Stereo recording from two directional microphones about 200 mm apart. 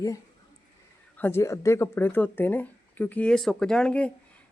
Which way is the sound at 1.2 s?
10° left (ahead or behind).